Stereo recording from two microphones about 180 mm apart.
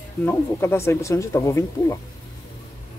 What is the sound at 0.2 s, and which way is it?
Speech, 10° left (ahead or behind).